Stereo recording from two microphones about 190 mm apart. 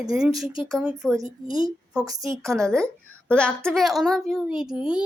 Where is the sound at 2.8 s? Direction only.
5° left (ahead or behind).